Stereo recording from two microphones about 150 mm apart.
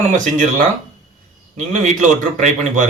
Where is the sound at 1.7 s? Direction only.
55° right (ahead or behind).